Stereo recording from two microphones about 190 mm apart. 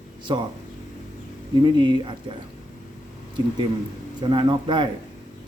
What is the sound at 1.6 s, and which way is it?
Speech, 25° right (ahead or behind).